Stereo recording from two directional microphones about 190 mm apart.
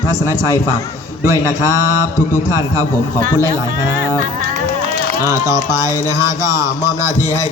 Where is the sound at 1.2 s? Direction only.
15° right (ahead or behind).